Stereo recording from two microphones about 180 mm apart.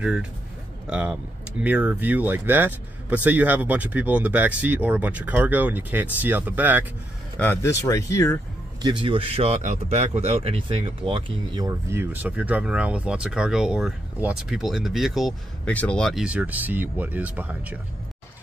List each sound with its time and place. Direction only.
0.0 s a man's voice: 5° right (ahead or behind)
7.3 s speech: 15° left (ahead or behind)
8.8 s speech: 25° right (ahead or behind); by 17.7 s 10° right (ahead or behind)